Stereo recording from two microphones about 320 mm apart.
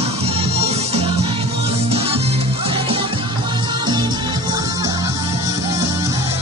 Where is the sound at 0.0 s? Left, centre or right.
Centre.